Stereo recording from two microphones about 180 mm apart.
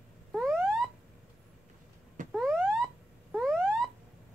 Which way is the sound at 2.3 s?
Centre (ahead or behind).